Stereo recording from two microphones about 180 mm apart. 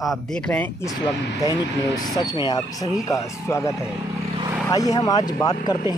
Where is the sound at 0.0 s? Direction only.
Centre (ahead or behind).